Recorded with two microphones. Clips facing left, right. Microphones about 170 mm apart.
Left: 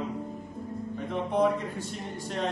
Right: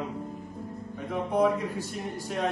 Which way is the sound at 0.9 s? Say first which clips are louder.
Right 1 dB; 5° right (ahead or behind).